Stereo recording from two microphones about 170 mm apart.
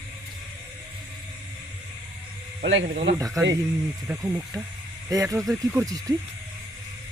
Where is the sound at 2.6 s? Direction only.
75° right (ahead or behind).